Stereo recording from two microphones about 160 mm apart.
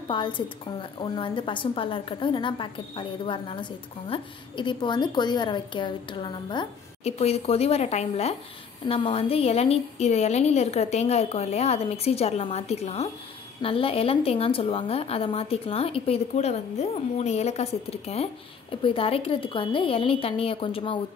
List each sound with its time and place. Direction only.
0.1 s speech: 30° left (ahead or behind)